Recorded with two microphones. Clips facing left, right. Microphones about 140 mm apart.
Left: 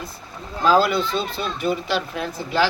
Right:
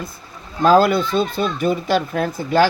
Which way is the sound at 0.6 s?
50° right (ahead or behind).